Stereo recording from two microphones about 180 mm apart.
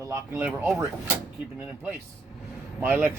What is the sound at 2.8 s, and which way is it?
Speech, 10° right (ahead or behind).